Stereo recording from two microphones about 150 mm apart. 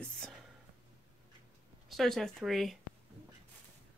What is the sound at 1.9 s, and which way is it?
Speech, centre (ahead or behind).